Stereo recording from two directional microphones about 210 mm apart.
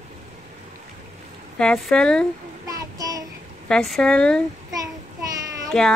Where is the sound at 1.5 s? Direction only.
5° left (ahead or behind).